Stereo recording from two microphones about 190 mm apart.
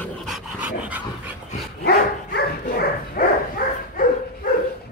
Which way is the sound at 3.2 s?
55° left (ahead or behind).